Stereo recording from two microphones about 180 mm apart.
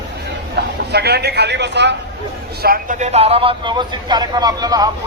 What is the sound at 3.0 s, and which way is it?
A man's voice, 35° right (ahead or behind).